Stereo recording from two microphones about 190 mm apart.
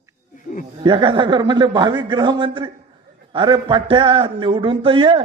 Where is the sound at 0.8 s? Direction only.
25° right (ahead or behind).